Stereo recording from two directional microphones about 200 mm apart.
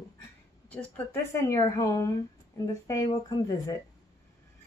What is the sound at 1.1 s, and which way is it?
A woman's voice, 15° left (ahead or behind).